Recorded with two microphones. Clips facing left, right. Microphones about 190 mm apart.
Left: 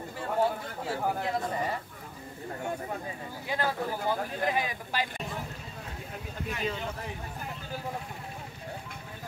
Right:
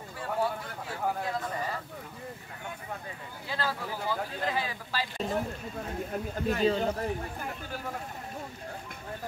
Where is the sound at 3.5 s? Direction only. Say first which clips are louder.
Left 3 dB; 15° left (ahead or behind).